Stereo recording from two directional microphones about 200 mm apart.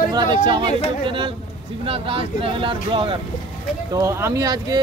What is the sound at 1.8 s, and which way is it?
Speech, 30° right (ahead or behind).